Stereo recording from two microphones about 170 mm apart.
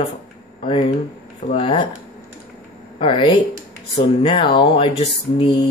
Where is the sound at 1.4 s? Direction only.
35° left (ahead or behind).